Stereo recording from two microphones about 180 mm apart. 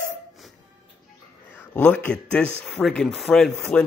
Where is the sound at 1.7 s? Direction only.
10° left (ahead or behind).